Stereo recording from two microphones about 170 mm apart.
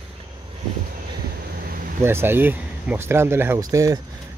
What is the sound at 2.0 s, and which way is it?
Speech, 15° right (ahead or behind).